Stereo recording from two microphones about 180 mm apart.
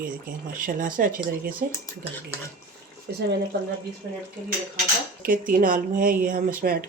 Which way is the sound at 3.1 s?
65° right (ahead or behind).